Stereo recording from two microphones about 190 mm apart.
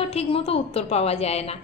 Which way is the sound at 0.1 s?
30° left (ahead or behind).